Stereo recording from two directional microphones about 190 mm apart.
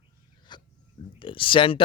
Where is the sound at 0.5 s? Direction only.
25° left (ahead or behind).